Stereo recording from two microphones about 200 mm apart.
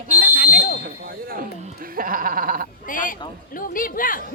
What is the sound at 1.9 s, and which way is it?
Speech, 45° right (ahead or behind).